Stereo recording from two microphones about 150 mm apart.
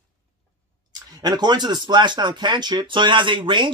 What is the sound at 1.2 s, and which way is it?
Speech, 30° right (ahead or behind).